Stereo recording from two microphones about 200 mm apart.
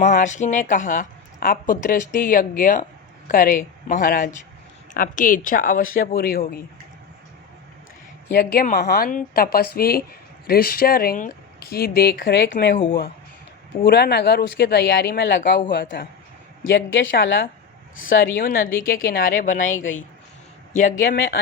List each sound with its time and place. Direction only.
0.0 s speech: 35° left (ahead or behind)
8.3 s speech: 50° left (ahead or behind)
13.8 s a woman's voice: 55° left (ahead or behind)
18.2 s speech: 45° left (ahead or behind)
20.7 s speech: 40° left (ahead or behind)